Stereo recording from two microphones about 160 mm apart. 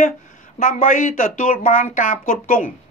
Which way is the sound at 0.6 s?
55° left (ahead or behind).